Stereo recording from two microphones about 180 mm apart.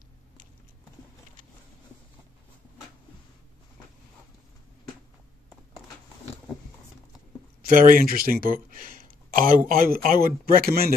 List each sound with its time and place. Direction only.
7.6 s speech: 50° right (ahead or behind)